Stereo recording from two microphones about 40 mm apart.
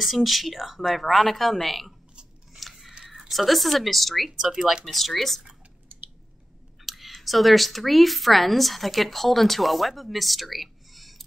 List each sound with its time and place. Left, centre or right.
0.0 s speech: centre
2.6 s a sound: centre
3.0 s speech: centre
4.3 s speech: centre
4.8 s speech: centre
5.9 s squish: right
6.9 s speech: centre